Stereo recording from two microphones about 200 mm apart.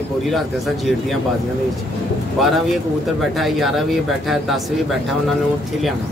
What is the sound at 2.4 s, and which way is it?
Speech, centre (ahead or behind).